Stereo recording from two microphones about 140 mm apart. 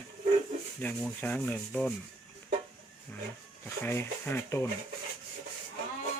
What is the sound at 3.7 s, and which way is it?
Rub, 20° left (ahead or behind).